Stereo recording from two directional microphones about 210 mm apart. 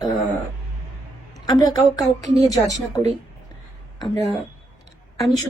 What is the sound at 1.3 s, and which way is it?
A woman's voice, 20° left (ahead or behind).